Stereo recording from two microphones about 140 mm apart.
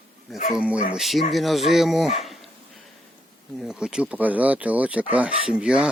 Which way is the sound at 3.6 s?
5° right (ahead or behind).